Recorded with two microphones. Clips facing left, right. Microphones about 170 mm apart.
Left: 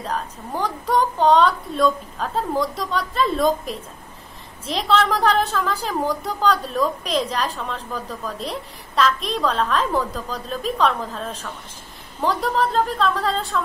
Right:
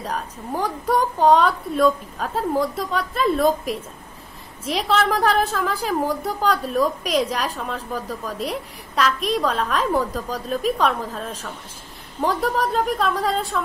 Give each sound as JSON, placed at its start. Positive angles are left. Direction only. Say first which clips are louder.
{"t": 0.0, "sound": "a woman's voice", "louder": "left 1 dB", "side_deg": -10}